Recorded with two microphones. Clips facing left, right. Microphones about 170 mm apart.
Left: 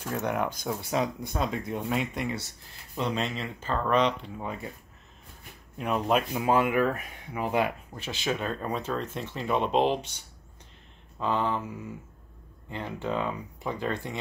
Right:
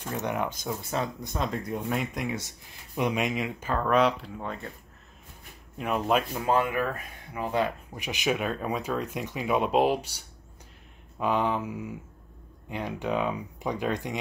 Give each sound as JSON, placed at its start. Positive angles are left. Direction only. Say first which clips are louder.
{"t": 0.0, "sound": "speech", "louder": "left 1 dB", "side_deg": 0}
{"t": 0.5, "sound": "speech", "louder": "left 2 dB", "side_deg": 10}
{"t": 3.0, "sound": "speech", "louder": "right 3 dB", "side_deg": -15}
{"t": 5.8, "sound": "speech", "louder": "even", "side_deg": 0}
{"t": 6.4, "sound": "speech", "louder": "left 2 dB", "side_deg": 15}
{"t": 7.9, "sound": "speech", "louder": "right 2 dB", "side_deg": -15}
{"t": 11.1, "sound": "speech", "louder": "right 2 dB", "side_deg": -15}